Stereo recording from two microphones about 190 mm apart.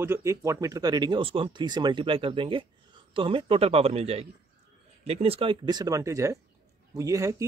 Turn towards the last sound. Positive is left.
turn(degrees=-15)  # may be behind; listen again after turning